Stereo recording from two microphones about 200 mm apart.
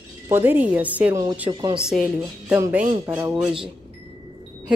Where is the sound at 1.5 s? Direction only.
20° right (ahead or behind).